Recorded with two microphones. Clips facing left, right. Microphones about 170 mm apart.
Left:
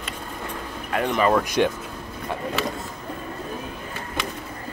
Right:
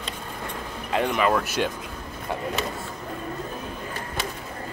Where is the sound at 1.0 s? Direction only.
Centre (ahead or behind).